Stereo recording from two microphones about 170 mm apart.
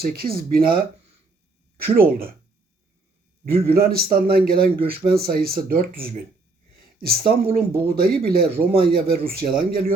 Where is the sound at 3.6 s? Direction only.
60° right (ahead or behind).